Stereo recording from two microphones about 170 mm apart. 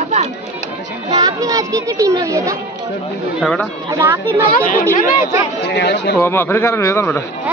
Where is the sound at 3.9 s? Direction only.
15° right (ahead or behind).